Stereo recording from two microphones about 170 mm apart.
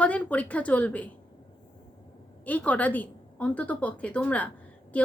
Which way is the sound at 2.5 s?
10° left (ahead or behind).